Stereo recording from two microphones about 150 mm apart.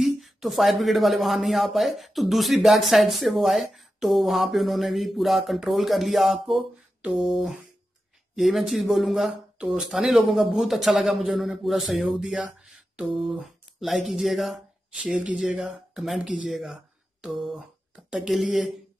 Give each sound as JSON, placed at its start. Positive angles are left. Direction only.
{"t": 0.0, "sound": "speech", "side_deg": 0}